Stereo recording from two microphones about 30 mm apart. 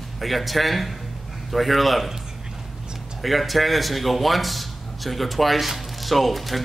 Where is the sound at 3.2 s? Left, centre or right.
Centre.